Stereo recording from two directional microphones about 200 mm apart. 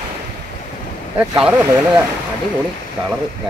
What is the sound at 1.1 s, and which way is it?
Speech, 5° right (ahead or behind).